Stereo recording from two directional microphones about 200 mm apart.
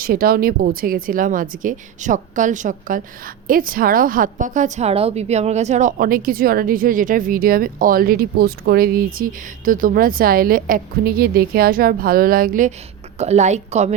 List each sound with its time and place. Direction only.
0.0 s a woman's voice: 45° right (ahead or behind)